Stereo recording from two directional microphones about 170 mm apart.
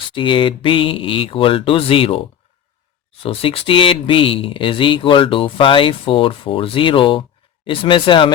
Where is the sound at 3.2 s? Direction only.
35° left (ahead or behind).